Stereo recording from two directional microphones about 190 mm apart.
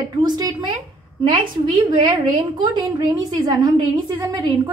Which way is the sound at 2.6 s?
20° right (ahead or behind).